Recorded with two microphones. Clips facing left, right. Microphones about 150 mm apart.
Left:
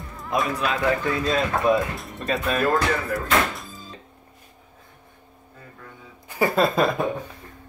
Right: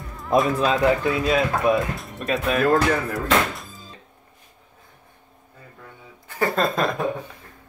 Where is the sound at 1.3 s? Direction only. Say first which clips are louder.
Even; 5° right (ahead or behind).